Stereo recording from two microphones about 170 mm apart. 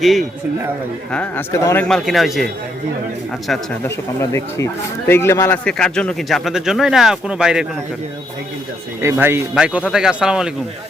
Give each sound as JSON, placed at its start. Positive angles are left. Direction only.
{"t": 0.0, "sound": "speech", "side_deg": 0}
{"t": 1.1, "sound": "speech", "side_deg": 10}
{"t": 3.8, "sound": "speech", "side_deg": 15}
{"t": 5.6, "sound": "speech", "side_deg": 5}
{"t": 9.0, "sound": "speech", "side_deg": -15}